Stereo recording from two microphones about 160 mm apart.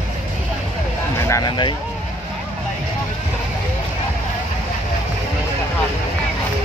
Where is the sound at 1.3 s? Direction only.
25° left (ahead or behind).